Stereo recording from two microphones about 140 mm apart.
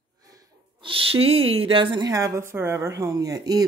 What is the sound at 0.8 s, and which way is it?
A woman's voice, 40° right (ahead or behind).